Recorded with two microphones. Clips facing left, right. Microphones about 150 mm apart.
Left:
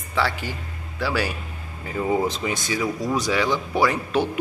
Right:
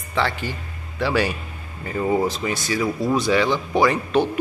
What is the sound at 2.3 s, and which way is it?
Speech, 15° left (ahead or behind).